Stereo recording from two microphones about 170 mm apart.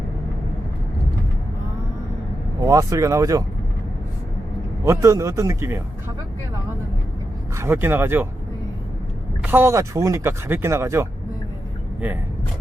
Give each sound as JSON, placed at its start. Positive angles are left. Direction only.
{"t": 2.6, "sound": "speech", "side_deg": -20}
{"t": 4.9, "sound": "speech", "side_deg": -20}
{"t": 7.5, "sound": "speech", "side_deg": -15}
{"t": 9.4, "sound": "speech", "side_deg": -10}